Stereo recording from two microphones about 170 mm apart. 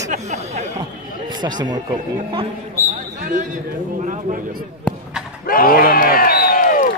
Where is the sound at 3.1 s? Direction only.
45° right (ahead or behind).